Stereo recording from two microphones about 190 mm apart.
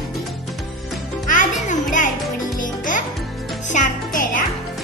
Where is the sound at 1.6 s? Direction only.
40° left (ahead or behind).